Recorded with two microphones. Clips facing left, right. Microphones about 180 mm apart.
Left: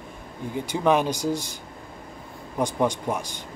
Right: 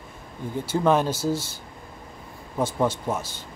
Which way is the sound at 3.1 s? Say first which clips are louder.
Even; 15° left (ahead or behind).